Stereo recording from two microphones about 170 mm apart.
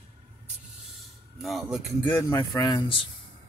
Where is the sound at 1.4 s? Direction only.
Centre (ahead or behind).